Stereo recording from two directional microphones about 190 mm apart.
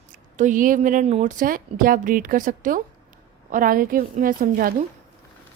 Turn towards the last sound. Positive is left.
turn(degrees=-45)  # may be behind; listen again after turning